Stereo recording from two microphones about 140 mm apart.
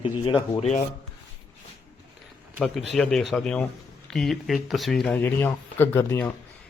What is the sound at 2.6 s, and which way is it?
A man's voice, centre (ahead or behind).